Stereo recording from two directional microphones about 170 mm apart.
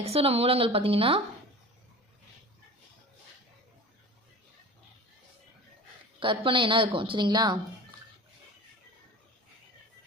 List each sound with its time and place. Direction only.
0.0 s speech: 35° right (ahead or behind)
6.1 s speech: 30° right (ahead or behind)